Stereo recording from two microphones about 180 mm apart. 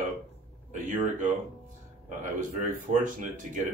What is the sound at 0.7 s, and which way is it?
Speech, 45° right (ahead or behind).